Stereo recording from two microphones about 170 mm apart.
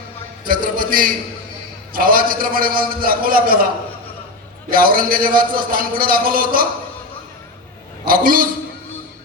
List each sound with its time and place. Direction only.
0.4 s a sound: 55° right (ahead or behind)
1.9 s a man's voice: 55° right (ahead or behind)
4.7 s a man's voice: 55° right (ahead or behind)
8.0 s a man's voice: 55° right (ahead or behind)